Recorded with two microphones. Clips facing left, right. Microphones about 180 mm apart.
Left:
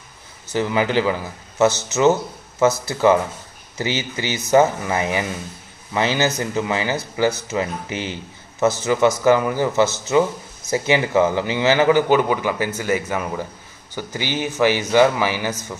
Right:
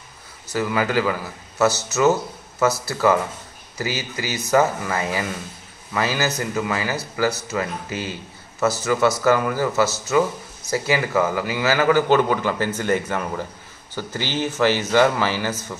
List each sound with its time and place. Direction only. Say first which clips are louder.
0.5 s a man's voice: left 2 dB; 25° left (ahead or behind)
2.6 s a man's voice: left 3 dB; 20° left (ahead or behind)